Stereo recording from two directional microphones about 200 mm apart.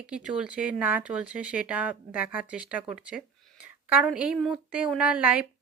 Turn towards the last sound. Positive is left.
turn(degrees=-5)  # may be behind; listen again after turning